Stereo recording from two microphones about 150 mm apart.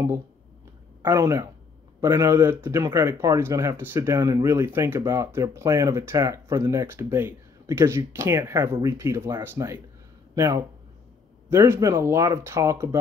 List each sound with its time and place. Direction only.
1.0 s speech: 20° right (ahead or behind)